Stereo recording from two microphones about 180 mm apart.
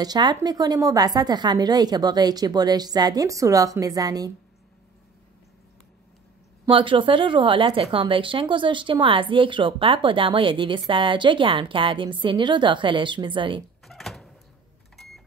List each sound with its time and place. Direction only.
0.0 s a woman's voice: 25° right (ahead or behind)
6.6 s a woman's voice: 30° right (ahead or behind)
13.8 s door: centre (ahead or behind)